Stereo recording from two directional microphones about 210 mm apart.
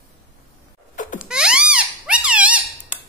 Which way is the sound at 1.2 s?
5° right (ahead or behind).